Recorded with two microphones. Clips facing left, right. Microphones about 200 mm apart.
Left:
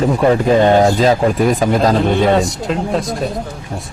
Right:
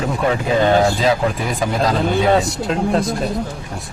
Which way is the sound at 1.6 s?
45° left (ahead or behind).